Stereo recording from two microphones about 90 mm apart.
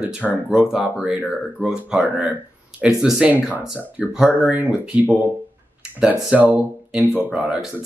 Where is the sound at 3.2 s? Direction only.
20° right (ahead or behind).